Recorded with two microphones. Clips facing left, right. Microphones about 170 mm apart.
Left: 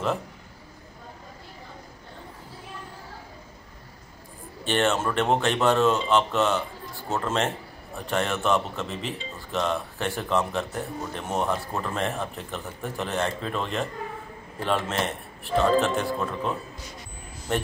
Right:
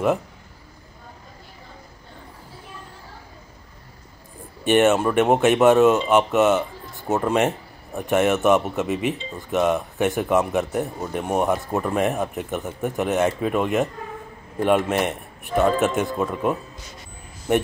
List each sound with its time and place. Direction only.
4.6 s speech: 15° right (ahead or behind)